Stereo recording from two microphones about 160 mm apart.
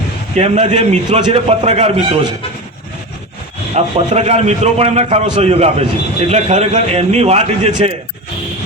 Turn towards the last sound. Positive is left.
turn(degrees=-40)  # may be behind; listen again after turning